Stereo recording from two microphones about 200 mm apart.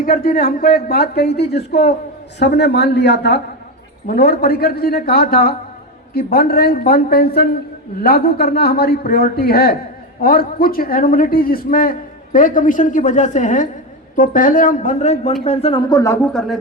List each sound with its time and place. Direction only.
0.0 s a man's voice: 45° left (ahead or behind); by 16.6 s centre (ahead or behind)